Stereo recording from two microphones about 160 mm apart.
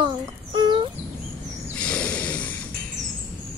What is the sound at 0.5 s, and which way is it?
Bird, 30° right (ahead or behind).